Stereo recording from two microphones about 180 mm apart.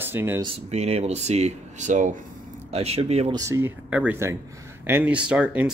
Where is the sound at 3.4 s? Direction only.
15° right (ahead or behind).